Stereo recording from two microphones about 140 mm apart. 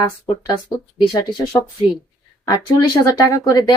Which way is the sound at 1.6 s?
20° left (ahead or behind).